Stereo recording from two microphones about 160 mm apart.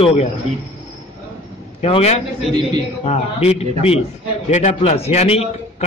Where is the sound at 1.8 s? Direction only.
40° left (ahead or behind).